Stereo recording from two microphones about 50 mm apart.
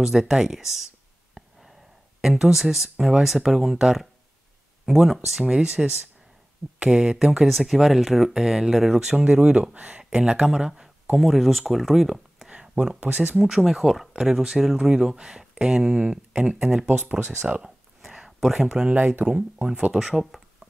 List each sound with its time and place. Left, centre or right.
0.0 s speech: centre
5.5 s speech: centre
7.4 s speech: centre
9.2 s speech: centre
9.8 s speech: right
10.0 s speech: centre
11.1 s speech: centre
12.4 s a sound: centre
13.1 s speech: right
13.4 s speech: centre; by 16.8 s right
17.1 s speech: centre
17.6 s a sound: centre
19.2 s speech: right
19.9 s speech: centre